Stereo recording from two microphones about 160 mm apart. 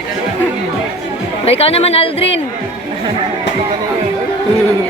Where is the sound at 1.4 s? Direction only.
40° left (ahead or behind).